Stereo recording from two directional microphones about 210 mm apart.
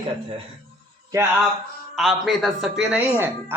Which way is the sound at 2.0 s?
Centre (ahead or behind).